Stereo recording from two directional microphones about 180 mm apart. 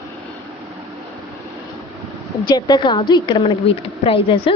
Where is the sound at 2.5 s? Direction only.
25° left (ahead or behind).